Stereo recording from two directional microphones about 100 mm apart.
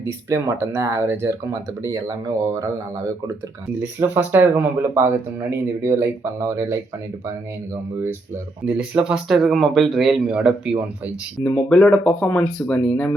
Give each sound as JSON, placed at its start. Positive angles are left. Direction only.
{"t": 0.0, "sound": "speech", "side_deg": -30}
{"t": 3.8, "sound": "speech", "side_deg": -20}
{"t": 8.6, "sound": "speech", "side_deg": -10}
{"t": 11.4, "sound": "speech", "side_deg": 25}
{"t": 11.7, "sound": "speech", "side_deg": 10}